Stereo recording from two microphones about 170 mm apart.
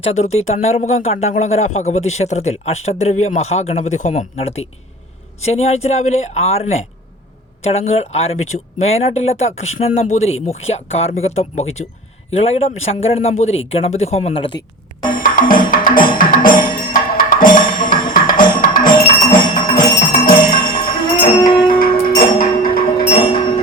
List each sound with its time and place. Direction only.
0.0 s speech: 40° left (ahead or behind)
15.0 s music: 55° left (ahead or behind)
21.4 s music: 25° left (ahead or behind)
21.7 s music: 55° left (ahead or behind)
23.0 s a sound: 30° left (ahead or behind)